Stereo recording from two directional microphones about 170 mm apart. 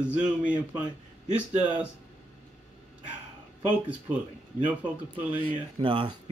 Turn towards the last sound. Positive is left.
turn(degrees=-30)  # may be behind; listen again after turning